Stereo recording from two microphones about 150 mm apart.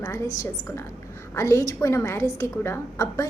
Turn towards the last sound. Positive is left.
turn(degrees=20)  # may be behind; listen again after turning